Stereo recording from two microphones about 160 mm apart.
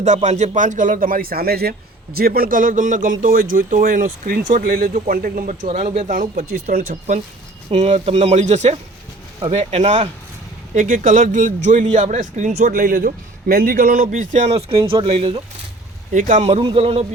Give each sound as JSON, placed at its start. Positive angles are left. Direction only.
{"t": 0.0, "sound": "a man's voice", "side_deg": -45}
{"t": 7.7, "sound": "a man's voice", "side_deg": -45}
{"t": 16.1, "sound": "a man's voice", "side_deg": -55}
{"t": 16.5, "sound": "a man's voice", "side_deg": -35}